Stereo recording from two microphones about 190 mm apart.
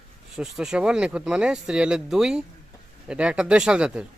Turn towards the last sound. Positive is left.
turn(degrees=-5)  # may be behind; listen again after turning